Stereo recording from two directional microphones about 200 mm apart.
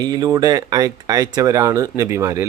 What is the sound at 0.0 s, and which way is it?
Speech, 20° right (ahead or behind).